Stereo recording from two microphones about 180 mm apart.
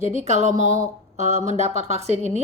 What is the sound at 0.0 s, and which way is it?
A woman's voice, 40° right (ahead or behind).